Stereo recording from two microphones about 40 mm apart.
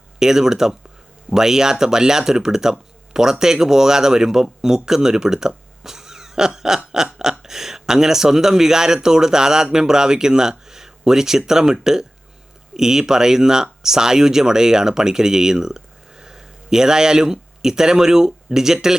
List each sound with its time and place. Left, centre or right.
0.2 s speech: centre